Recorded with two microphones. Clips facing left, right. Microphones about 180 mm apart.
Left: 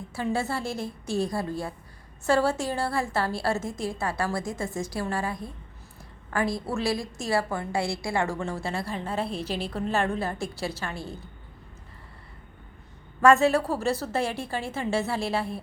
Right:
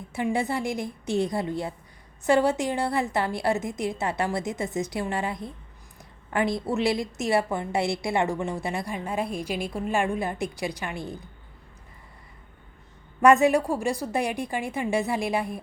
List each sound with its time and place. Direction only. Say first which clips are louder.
0.1 s a woman's voice: right 2 dB; 20° right (ahead or behind)
13.2 s a woman's voice: right 1 dB; 15° right (ahead or behind)